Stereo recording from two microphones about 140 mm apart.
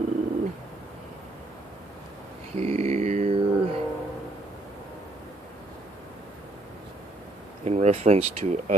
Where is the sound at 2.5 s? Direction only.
50° right (ahead or behind).